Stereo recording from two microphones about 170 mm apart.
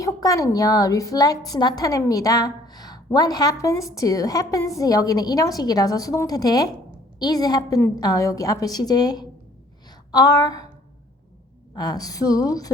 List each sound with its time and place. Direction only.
0.0 s a woman's voice: 20° left (ahead or behind)
10.1 s a sound: 25° left (ahead or behind)
11.7 s a woman's voice: 25° left (ahead or behind)